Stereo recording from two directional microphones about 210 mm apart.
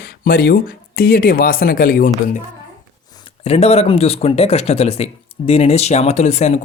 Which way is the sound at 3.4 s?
30° left (ahead or behind).